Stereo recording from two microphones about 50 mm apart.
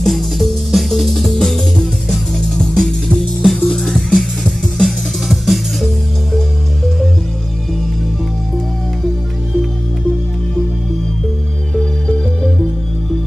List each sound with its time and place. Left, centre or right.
0.0 s music: centre